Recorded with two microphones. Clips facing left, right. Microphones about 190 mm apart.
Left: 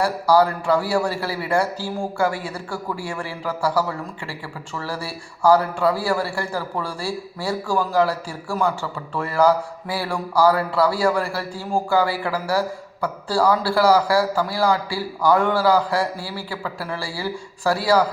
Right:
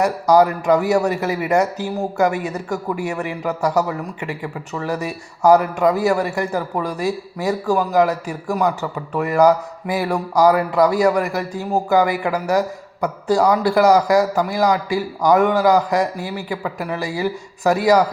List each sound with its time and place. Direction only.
0.0 s a man's voice: 20° right (ahead or behind)